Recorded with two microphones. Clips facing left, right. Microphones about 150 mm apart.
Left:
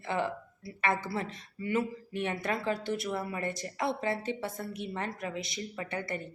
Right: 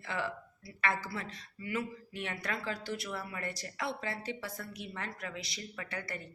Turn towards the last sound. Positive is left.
turn(degrees=20)  # may be behind; listen again after turning